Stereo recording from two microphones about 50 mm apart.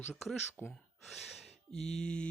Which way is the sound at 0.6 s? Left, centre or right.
Left.